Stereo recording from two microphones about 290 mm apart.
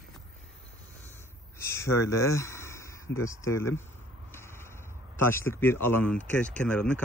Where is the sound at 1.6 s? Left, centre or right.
Centre.